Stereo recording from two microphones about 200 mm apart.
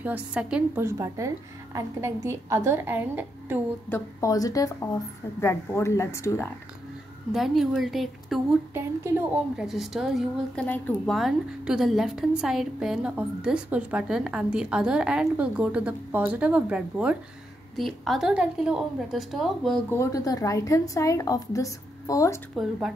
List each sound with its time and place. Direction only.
0.0 s a woman's voice: 5° right (ahead or behind)
3.9 s a woman's voice: 15° left (ahead or behind)
7.3 s a woman's voice: centre (ahead or behind)
19.9 s a woman's voice: 15° left (ahead or behind)
22.6 s a woman's voice: centre (ahead or behind)